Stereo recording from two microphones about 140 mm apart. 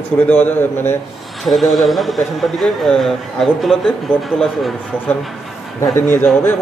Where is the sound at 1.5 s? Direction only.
Centre (ahead or behind).